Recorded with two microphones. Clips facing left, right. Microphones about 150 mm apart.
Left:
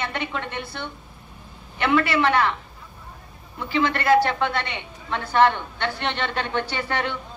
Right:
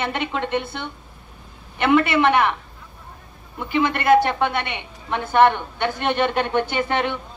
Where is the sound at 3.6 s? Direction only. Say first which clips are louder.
Right 2 dB; 15° right (ahead or behind).